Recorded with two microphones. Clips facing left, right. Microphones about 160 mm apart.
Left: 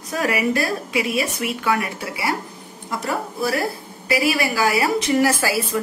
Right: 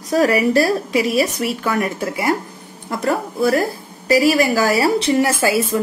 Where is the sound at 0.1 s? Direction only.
35° right (ahead or behind).